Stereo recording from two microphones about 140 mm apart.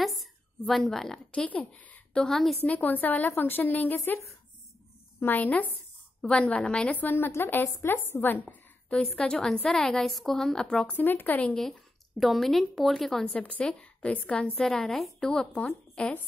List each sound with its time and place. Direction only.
0.0 s a woman's voice: centre (ahead or behind)